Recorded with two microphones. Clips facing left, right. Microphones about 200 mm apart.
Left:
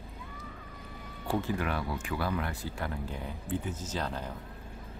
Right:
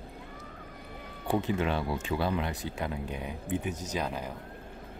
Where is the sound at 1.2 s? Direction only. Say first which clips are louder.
Right 3 dB; 20° right (ahead or behind).